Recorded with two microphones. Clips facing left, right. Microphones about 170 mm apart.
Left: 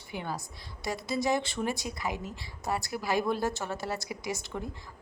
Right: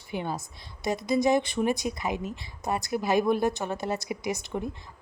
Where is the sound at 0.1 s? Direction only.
20° right (ahead or behind).